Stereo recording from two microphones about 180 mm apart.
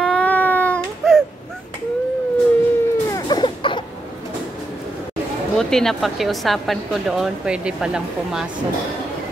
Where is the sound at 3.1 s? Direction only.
25° left (ahead or behind).